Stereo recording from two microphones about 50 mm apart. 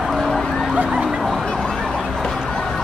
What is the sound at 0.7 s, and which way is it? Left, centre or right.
Vehicle, centre.